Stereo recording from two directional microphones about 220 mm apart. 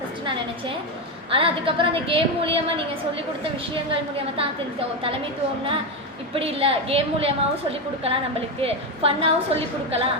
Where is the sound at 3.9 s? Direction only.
25° right (ahead or behind).